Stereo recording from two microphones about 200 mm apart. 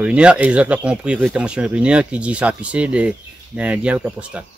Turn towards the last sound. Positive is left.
turn(degrees=-5)  # may be behind; listen again after turning